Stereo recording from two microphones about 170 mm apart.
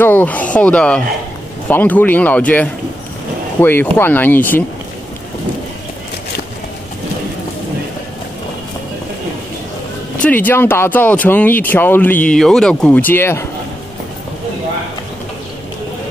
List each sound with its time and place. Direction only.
0.0 s speech: 10° left (ahead or behind)
10.2 s speech: 10° left (ahead or behind)